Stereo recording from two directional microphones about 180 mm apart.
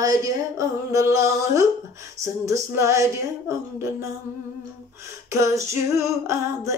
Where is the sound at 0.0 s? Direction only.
20° right (ahead or behind).